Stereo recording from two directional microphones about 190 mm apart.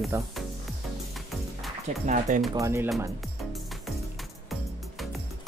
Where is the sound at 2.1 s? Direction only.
40° right (ahead or behind).